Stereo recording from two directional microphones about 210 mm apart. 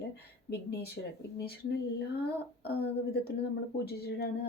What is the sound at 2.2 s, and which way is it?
Speech, 50° left (ahead or behind).